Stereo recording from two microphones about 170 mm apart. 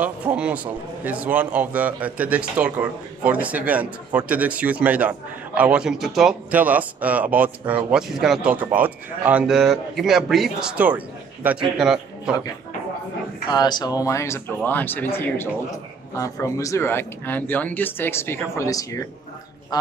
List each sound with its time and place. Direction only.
0.0 s a man's voice: 10° right (ahead or behind)
13.5 s speech: 25° left (ahead or behind)